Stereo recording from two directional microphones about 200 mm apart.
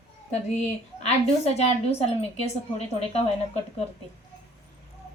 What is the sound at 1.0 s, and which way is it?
A woman's voice, 30° left (ahead or behind).